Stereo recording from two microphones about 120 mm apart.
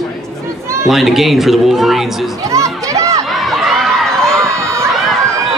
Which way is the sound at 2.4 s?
25° right (ahead or behind).